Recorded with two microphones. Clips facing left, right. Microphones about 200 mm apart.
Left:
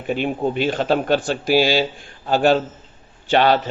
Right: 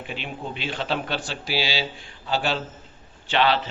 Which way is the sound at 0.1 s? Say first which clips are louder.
Left 14 dB; 50° left (ahead or behind).